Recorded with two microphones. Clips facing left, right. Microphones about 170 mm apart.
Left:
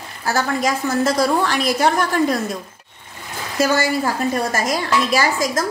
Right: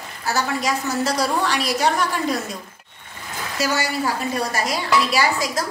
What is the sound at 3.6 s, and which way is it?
A woman's voice, 50° left (ahead or behind).